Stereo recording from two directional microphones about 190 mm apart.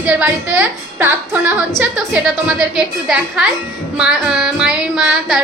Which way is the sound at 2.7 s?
5° right (ahead or behind).